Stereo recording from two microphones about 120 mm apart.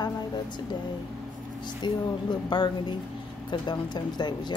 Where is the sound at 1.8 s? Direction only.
40° left (ahead or behind).